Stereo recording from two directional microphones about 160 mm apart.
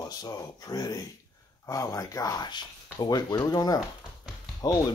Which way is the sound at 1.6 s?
20° left (ahead or behind).